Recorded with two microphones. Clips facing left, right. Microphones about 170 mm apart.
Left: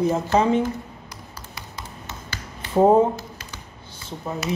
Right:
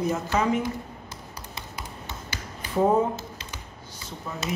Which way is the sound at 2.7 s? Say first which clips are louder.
Left 6 dB; 30° left (ahead or behind).